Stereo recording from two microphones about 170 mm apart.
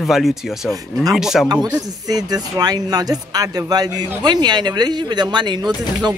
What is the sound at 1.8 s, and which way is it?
Speech, 20° right (ahead or behind).